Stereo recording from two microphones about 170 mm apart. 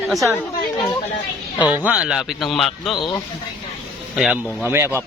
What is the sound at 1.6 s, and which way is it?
A man's voice, 10° right (ahead or behind).